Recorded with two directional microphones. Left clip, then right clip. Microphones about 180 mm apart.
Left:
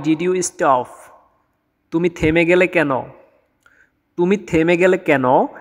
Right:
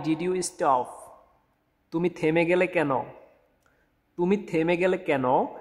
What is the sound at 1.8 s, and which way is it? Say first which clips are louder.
Speech: left 8 dB; 20° left (ahead or behind).